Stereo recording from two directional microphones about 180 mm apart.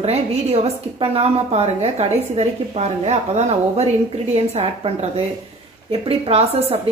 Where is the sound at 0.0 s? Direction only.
35° right (ahead or behind).